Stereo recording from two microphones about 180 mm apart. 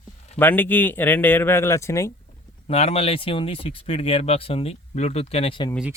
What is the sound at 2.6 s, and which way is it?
Speech, 35° left (ahead or behind).